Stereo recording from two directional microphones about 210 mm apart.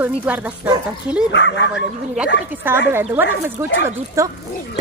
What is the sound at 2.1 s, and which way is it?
Speech, 5° right (ahead or behind).